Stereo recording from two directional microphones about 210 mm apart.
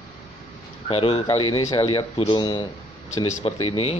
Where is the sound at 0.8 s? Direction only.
25° left (ahead or behind).